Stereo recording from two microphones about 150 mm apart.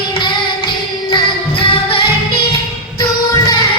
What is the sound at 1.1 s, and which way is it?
Music, 35° left (ahead or behind).